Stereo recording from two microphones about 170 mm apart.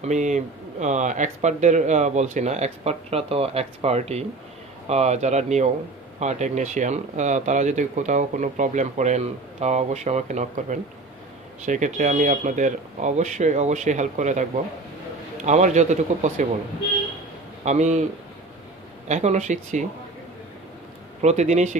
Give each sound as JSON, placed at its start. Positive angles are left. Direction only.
{"t": 0.0, "sound": "speech", "side_deg": -45}
{"t": 15.4, "sound": "speech", "side_deg": -45}
{"t": 17.6, "sound": "speech", "side_deg": -45}
{"t": 19.0, "sound": "speech", "side_deg": -40}
{"t": 21.2, "sound": "speech", "side_deg": -40}